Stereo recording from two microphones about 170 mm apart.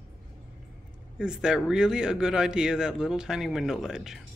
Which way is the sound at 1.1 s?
5° right (ahead or behind).